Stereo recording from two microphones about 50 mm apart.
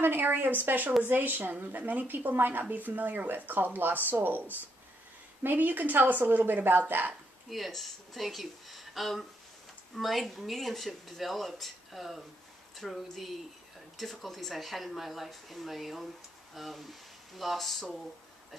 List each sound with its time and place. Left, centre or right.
0.0 s speech: right
5.4 s speech: right
7.4 s speech: centre